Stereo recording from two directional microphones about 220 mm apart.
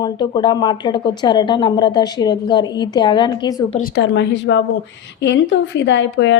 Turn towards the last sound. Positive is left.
turn(degrees=55)  # may be behind; listen again after turning